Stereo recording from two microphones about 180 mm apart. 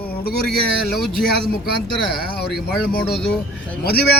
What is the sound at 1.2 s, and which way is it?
A man's voice, 60° left (ahead or behind).